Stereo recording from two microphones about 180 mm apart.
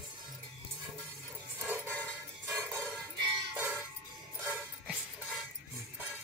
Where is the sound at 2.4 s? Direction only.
15° right (ahead or behind).